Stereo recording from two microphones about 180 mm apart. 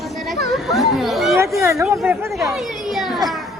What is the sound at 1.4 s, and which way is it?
Speech, 15° right (ahead or behind).